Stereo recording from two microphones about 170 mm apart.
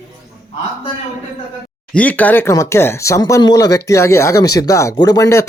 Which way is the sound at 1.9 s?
10° left (ahead or behind).